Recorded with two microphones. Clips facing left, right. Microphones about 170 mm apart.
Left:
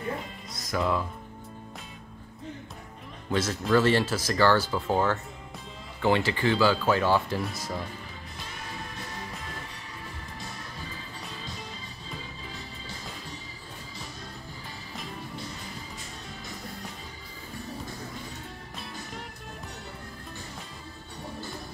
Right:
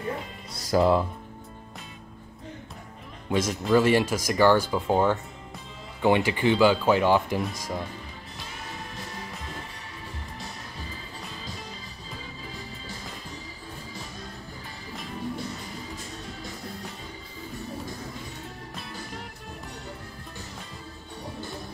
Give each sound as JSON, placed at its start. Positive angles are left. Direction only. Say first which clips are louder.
{"t": 0.5, "sound": "music", "louder": "right 7 dB", "side_deg": -30}
{"t": 3.3, "sound": "speech", "louder": "right 2 dB", "side_deg": -15}